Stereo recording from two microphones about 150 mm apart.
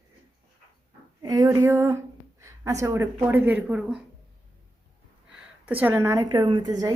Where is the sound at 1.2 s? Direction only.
25° right (ahead or behind).